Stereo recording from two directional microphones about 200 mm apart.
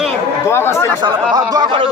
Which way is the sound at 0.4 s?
15° left (ahead or behind).